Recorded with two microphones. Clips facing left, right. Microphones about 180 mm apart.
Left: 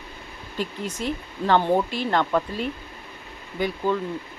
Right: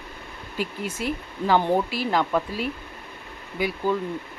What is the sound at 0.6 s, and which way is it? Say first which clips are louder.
Speech: even; 10° right (ahead or behind).